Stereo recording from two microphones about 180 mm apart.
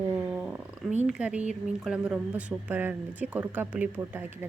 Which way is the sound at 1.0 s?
5° right (ahead or behind).